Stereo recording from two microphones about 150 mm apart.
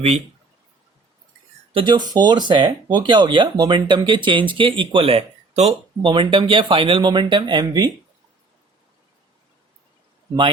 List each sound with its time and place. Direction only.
1.7 s speech: 30° right (ahead or behind)
6.0 s speech: 30° right (ahead or behind)